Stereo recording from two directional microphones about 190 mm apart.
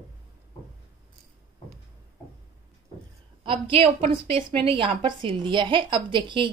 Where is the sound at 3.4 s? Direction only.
30° right (ahead or behind).